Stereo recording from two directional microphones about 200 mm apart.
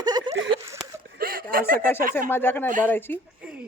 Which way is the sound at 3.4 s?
5° right (ahead or behind).